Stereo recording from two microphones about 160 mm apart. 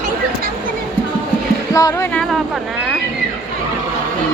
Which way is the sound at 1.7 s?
20° left (ahead or behind).